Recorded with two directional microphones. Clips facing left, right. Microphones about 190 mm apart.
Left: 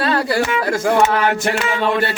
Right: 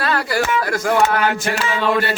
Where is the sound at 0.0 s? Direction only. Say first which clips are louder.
Left 2 dB; 25° left (ahead or behind).